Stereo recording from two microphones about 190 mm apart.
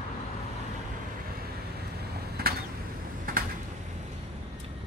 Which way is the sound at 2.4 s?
55° right (ahead or behind).